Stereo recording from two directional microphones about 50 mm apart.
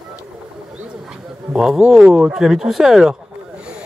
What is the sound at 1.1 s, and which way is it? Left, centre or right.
Bird, centre.